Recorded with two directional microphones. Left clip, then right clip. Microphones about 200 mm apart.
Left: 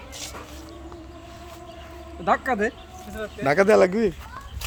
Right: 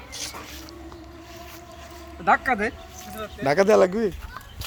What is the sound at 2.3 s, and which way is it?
Speech, 10° left (ahead or behind).